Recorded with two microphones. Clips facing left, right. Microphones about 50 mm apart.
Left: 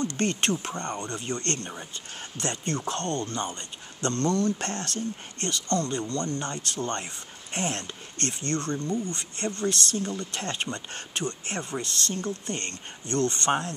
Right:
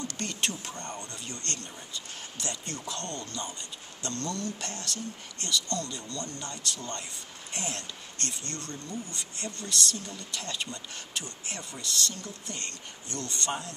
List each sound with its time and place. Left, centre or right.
0.2 s speech: left